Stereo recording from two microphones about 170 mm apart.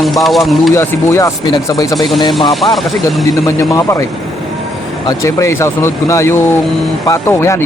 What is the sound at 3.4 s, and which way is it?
A man's voice, 20° left (ahead or behind).